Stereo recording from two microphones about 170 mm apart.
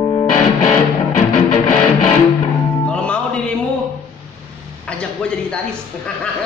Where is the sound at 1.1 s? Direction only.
45° left (ahead or behind).